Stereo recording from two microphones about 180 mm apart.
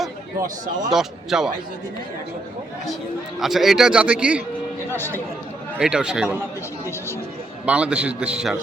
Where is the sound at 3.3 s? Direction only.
Centre (ahead or behind).